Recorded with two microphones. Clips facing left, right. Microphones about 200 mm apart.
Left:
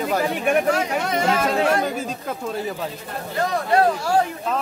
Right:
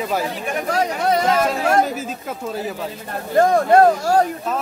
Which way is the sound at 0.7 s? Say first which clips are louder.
Right 3 dB; 35° right (ahead or behind).